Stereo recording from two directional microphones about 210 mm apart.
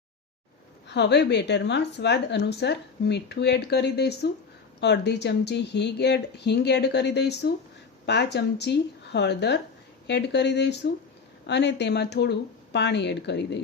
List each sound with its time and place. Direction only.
0.9 s a woman's voice: 55° left (ahead or behind)